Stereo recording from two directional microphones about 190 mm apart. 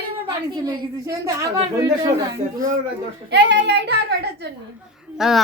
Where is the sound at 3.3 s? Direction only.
65° right (ahead or behind).